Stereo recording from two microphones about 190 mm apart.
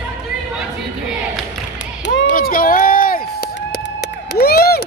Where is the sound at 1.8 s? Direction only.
70° left (ahead or behind).